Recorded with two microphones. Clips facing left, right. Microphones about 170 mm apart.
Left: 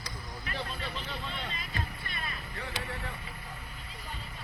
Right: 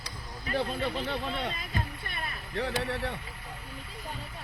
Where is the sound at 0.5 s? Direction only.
55° right (ahead or behind).